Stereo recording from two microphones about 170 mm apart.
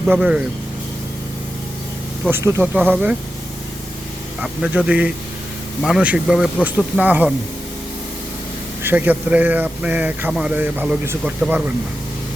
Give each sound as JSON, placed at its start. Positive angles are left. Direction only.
{"t": 0.0, "sound": "speech", "side_deg": -5}
{"t": 2.3, "sound": "speech", "side_deg": -15}
{"t": 4.4, "sound": "speech", "side_deg": -5}
{"t": 8.8, "sound": "speech", "side_deg": -10}